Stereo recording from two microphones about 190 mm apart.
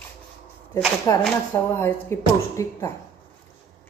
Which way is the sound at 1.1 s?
15° left (ahead or behind).